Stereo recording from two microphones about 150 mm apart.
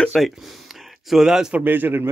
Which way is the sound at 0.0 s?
Centre (ahead or behind).